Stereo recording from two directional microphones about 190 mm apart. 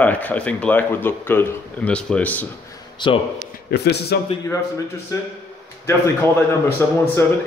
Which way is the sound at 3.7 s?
60° left (ahead or behind).